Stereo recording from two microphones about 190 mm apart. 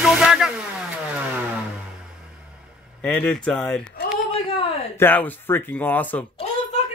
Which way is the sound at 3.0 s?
5° left (ahead or behind).